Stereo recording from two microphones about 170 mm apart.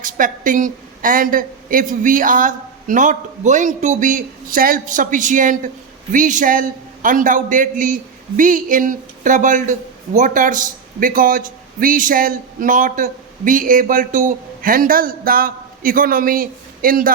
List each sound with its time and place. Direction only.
0.0 s a woman's voice: 50° right (ahead or behind)